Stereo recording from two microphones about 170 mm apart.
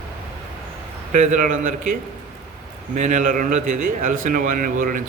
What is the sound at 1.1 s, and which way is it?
A man's voice, 50° right (ahead or behind).